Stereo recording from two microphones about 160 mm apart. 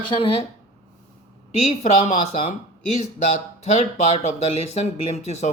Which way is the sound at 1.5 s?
45° left (ahead or behind).